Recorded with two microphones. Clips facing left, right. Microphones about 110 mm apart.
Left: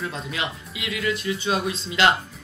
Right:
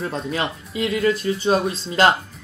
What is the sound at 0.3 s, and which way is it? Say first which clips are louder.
Speech: right 5 dB; 35° right (ahead or behind).